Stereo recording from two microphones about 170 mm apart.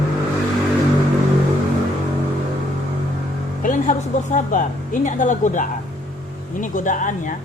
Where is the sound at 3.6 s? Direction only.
50° left (ahead or behind).